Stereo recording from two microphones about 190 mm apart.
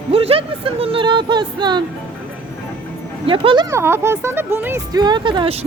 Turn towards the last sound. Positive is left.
turn(degrees=-30)  # may be behind; listen again after turning